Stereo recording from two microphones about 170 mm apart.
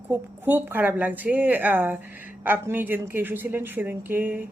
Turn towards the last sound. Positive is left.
turn(degrees=-10)  # may be behind; listen again after turning